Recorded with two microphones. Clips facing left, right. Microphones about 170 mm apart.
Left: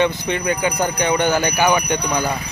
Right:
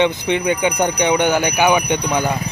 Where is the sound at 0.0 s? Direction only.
20° right (ahead or behind).